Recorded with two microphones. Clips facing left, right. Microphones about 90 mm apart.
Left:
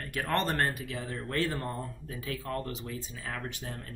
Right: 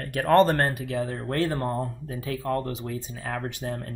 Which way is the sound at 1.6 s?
55° right (ahead or behind).